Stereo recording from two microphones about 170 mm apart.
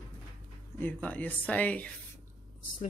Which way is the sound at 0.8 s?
10° left (ahead or behind).